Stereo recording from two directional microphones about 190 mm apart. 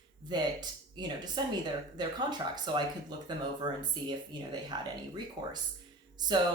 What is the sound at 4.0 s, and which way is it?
Speech, 25° right (ahead or behind).